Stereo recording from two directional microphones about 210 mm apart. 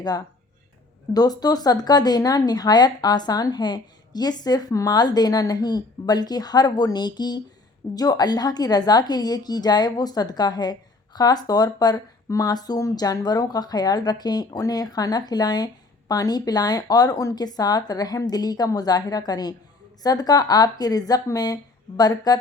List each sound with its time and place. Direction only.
1.1 s a woman's voice: 20° left (ahead or behind)